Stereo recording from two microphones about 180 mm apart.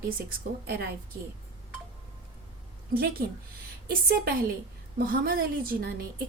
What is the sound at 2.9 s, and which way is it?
A woman's voice, 55° right (ahead or behind).